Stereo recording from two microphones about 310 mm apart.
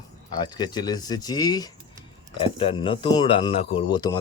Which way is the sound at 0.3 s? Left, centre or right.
Centre.